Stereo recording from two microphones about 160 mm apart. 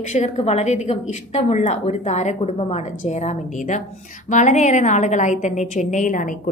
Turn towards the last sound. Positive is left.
turn(degrees=55)  # may be behind; listen again after turning